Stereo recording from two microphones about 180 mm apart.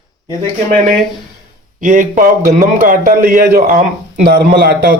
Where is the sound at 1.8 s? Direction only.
45° right (ahead or behind).